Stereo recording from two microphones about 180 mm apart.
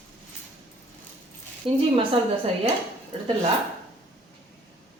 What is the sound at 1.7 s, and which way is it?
Speech, 30° right (ahead or behind).